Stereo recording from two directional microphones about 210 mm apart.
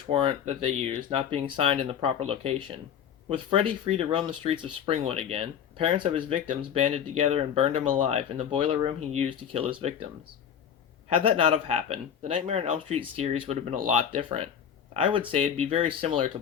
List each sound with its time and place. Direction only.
0.1 s speech: 25° right (ahead or behind)
11.1 s speech: 25° right (ahead or behind)